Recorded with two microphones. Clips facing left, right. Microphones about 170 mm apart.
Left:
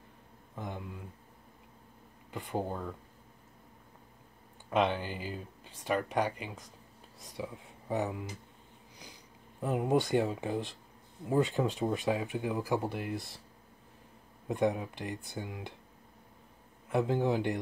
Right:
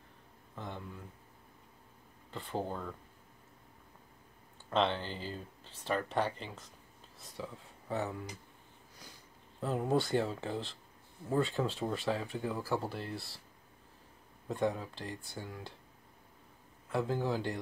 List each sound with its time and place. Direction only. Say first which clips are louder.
0.6 s speech: left 3 dB; 15° left (ahead or behind)
2.3 s speech: left 2 dB; 15° left (ahead or behind)
4.6 s speech: left 2 dB; 10° left (ahead or behind)
9.6 s speech: left 3 dB; 15° left (ahead or behind)
14.5 s speech: left 3 dB; 20° left (ahead or behind)
16.9 s speech: left 4 dB; 20° left (ahead or behind)